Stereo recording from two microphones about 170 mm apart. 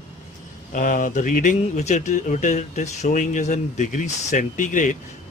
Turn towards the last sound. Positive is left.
turn(degrees=50)  # may be behind; listen again after turning